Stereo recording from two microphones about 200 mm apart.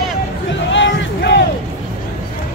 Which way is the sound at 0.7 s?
65° left (ahead or behind).